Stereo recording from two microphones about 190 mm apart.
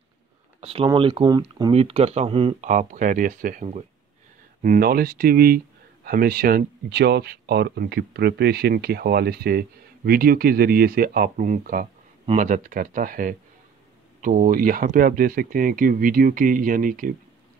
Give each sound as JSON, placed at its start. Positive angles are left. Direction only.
{"t": 0.6, "sound": "speech", "side_deg": -30}